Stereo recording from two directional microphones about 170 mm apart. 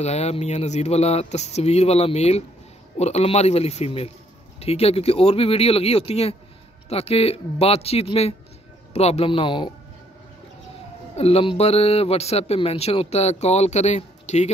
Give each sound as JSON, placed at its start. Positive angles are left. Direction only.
{"t": 0.0, "sound": "a man's voice", "side_deg": 40}
{"t": 11.1, "sound": "a man's voice", "side_deg": 35}